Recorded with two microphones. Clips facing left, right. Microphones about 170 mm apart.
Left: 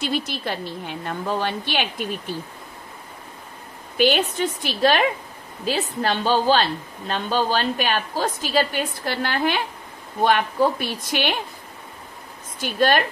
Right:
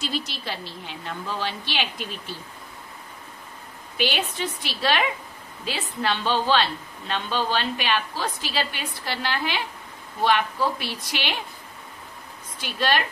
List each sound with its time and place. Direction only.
0.0 s a woman's voice: 55° left (ahead or behind)
3.9 s a woman's voice: 45° left (ahead or behind)
12.5 s a woman's voice: 45° left (ahead or behind)